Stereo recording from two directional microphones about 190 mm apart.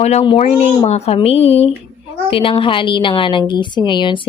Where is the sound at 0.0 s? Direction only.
35° left (ahead or behind).